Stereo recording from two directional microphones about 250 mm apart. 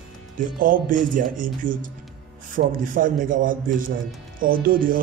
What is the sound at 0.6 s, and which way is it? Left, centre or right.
Speech, right.